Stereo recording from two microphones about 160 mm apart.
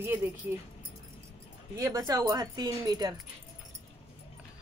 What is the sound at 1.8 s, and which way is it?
Speech, 20° right (ahead or behind).